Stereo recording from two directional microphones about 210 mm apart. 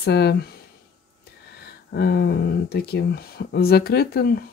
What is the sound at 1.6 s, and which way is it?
Speech, 50° left (ahead or behind).